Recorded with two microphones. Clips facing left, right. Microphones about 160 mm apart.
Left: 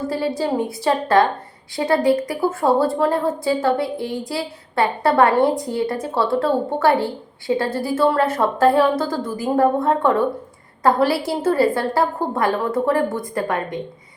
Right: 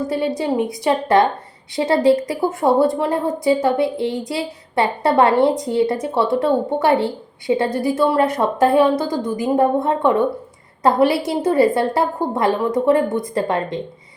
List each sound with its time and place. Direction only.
0.1 s a woman's voice: 20° right (ahead or behind)